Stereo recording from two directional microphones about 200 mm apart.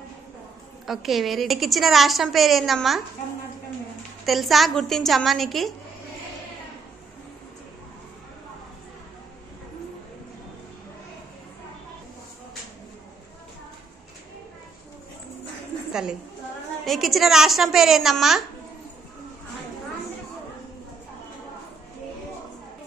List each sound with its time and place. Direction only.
0.8 s a woman's voice: centre (ahead or behind)
4.3 s a woman's voice: centre (ahead or behind)
15.9 s a sound: 5° right (ahead or behind)
16.8 s a woman's voice: centre (ahead or behind)